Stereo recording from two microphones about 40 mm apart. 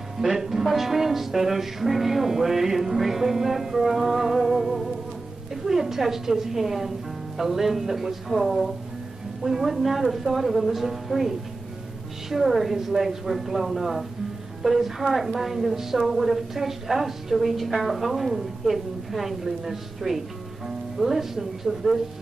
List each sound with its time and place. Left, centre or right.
0.2 s music: centre
7.3 s a woman's voice: centre
14.6 s music: centre
15.1 s a woman's voice: centre
20.6 s music: centre